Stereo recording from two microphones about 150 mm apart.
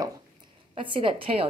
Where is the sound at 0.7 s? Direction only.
35° right (ahead or behind).